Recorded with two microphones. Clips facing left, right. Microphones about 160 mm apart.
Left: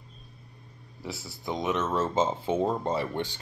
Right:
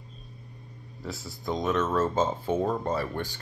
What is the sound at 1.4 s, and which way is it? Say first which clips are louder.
Speech: right 2 dB; 10° left (ahead or behind).